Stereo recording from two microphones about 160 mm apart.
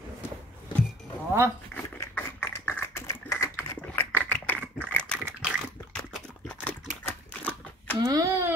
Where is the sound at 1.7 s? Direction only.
10° left (ahead or behind).